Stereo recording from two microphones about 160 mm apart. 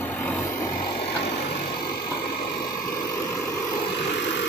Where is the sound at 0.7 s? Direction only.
30° left (ahead or behind).